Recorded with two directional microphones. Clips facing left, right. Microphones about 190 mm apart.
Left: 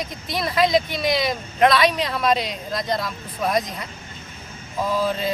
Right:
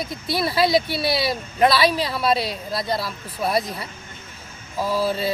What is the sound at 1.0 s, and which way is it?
Speech, 35° right (ahead or behind).